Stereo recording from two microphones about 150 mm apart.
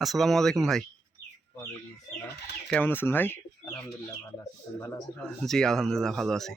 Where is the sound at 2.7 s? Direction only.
10° left (ahead or behind).